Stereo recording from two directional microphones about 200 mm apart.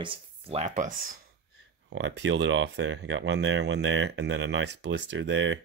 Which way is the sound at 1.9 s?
65° right (ahead or behind).